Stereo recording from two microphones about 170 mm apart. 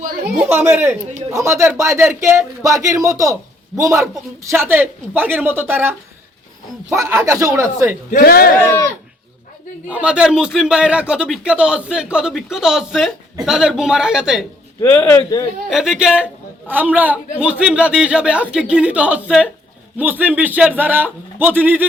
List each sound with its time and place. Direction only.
0.4 s speech: 15° right (ahead or behind)
8.1 s speech: 60° left (ahead or behind)
9.9 s speech: 5° right (ahead or behind)
14.8 s speech: 10° left (ahead or behind)
15.7 s a man's voice: 5° right (ahead or behind)